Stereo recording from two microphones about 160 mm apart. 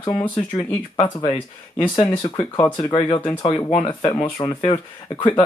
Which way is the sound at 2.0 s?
35° left (ahead or behind).